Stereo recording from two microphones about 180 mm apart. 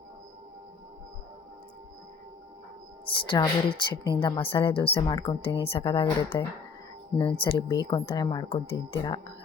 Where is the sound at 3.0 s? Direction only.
30° left (ahead or behind).